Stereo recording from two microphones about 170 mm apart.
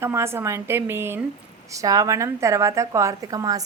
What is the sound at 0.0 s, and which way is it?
A woman's voice, 15° right (ahead or behind).